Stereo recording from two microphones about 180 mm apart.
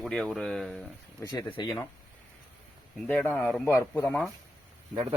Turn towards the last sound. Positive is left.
turn(degrees=-5)  # may be behind; listen again after turning